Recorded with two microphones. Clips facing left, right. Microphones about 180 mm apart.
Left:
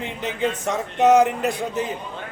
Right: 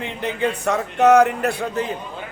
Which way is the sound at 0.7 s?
20° left (ahead or behind).